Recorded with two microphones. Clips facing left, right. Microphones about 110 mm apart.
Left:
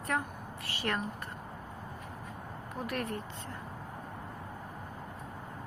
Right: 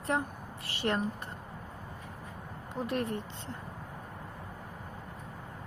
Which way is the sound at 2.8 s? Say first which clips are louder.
Right 3 dB; 25° right (ahead or behind).